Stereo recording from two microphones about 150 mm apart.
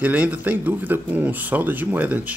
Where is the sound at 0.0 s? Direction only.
10° right (ahead or behind).